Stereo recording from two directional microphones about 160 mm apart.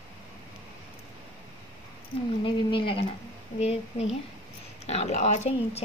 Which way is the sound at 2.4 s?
35° left (ahead or behind).